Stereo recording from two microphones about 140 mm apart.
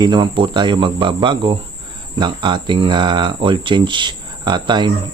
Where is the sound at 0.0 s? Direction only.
35° right (ahead or behind).